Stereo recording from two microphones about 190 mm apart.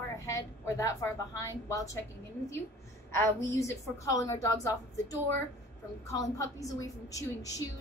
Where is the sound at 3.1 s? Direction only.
15° left (ahead or behind).